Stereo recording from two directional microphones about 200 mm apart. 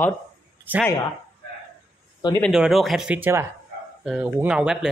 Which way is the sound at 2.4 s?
Centre (ahead or behind).